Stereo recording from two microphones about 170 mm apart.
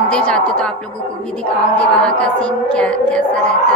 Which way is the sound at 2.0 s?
5° left (ahead or behind).